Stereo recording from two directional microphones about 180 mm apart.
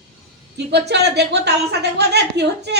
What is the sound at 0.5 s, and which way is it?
A woman's voice, 70° right (ahead or behind).